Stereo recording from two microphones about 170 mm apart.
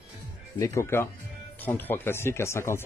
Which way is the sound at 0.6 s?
15° left (ahead or behind).